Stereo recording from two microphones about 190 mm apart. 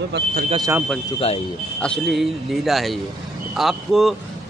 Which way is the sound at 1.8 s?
5° left (ahead or behind).